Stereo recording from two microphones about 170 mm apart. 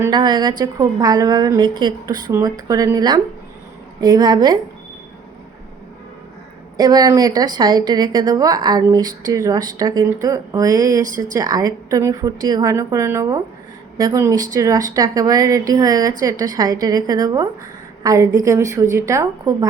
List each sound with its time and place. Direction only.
0.0 s a woman's voice: 25° right (ahead or behind)
6.7 s a woman's voice: 25° right (ahead or behind)
11.0 s speech: 50° right (ahead or behind)
11.3 s a woman's voice: 20° right (ahead or behind)